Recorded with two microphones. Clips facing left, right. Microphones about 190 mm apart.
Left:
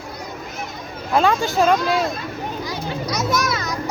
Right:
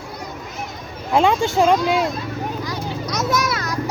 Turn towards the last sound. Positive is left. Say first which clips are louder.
# even
turn(degrees=-5)  # may be behind; listen again after turning